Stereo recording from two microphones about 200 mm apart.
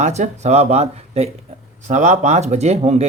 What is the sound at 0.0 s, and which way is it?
Speech, 35° right (ahead or behind).